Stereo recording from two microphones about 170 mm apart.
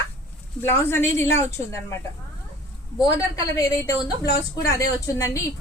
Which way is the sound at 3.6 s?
20° left (ahead or behind).